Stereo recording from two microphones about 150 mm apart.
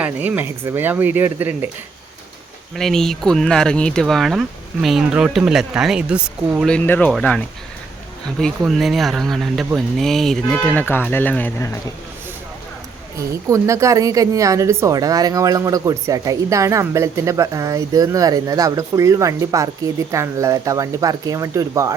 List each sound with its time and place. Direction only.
0.0 s speech: 10° right (ahead or behind)
2.7 s speech: 5° left (ahead or behind)
6.7 s speech: 10° left (ahead or behind)
13.1 s speech: 20° right (ahead or behind)